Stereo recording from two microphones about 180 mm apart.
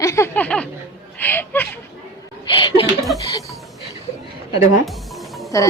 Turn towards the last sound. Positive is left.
turn(degrees=15)  # may be behind; listen again after turning